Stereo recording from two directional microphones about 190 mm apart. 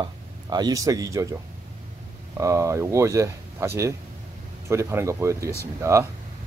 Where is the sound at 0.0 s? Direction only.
20° right (ahead or behind).